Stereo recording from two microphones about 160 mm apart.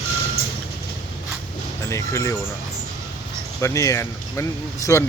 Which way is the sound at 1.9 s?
20° left (ahead or behind).